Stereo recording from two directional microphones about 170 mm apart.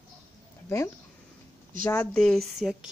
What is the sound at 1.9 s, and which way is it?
Speech, 10° left (ahead or behind).